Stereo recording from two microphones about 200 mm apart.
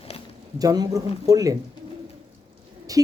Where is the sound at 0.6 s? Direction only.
20° right (ahead or behind).